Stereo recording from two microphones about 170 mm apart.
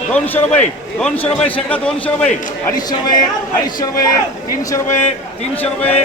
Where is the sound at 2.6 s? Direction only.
25° left (ahead or behind).